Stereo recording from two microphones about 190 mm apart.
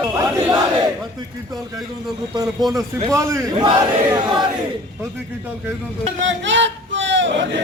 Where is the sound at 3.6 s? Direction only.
25° right (ahead or behind).